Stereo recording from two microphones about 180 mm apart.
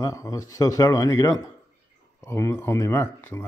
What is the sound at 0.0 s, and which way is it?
Speech, 20° left (ahead or behind).